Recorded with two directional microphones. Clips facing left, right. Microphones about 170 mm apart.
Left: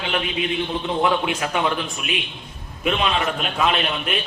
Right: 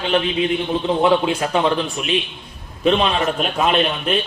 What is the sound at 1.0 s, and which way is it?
Speech, 30° right (ahead or behind).